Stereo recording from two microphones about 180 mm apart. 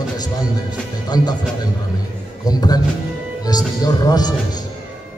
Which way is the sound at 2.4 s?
20° left (ahead or behind).